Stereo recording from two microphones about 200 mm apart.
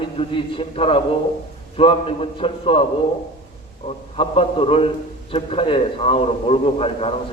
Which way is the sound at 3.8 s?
30° left (ahead or behind).